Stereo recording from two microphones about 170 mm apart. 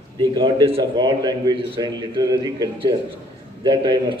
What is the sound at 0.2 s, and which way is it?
A man's voice, 25° right (ahead or behind).